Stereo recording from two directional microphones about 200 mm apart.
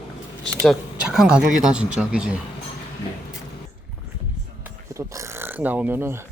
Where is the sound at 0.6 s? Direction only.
5° right (ahead or behind).